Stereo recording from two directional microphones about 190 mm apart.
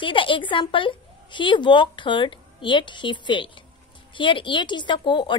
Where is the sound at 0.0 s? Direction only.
25° left (ahead or behind).